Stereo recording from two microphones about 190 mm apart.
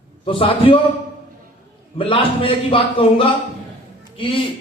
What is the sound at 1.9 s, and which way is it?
A man's voice, 25° left (ahead or behind).